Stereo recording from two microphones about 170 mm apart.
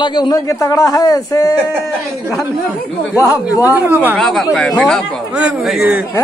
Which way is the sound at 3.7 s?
10° right (ahead or behind).